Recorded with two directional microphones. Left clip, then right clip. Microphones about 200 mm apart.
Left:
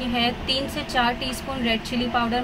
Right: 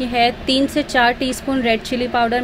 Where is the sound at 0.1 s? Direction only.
30° right (ahead or behind).